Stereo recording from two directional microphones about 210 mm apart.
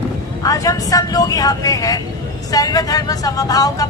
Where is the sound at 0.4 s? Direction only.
15° left (ahead or behind).